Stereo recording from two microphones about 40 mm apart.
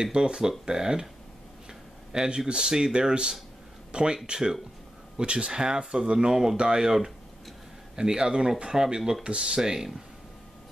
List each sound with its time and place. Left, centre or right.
0.0 s speech: centre
9.2 s speech: right